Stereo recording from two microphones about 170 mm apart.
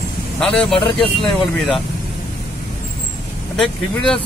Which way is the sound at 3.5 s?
5° left (ahead or behind).